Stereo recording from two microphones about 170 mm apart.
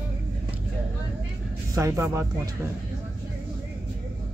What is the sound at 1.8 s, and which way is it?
Speech, 20° right (ahead or behind).